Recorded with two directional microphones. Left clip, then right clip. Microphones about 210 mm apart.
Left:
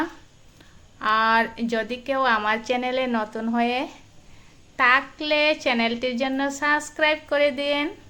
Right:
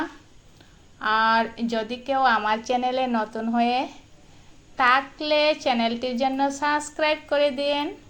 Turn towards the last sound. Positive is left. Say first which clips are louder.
# left 1 dB
turn(degrees=10)  # may be behind; listen again after turning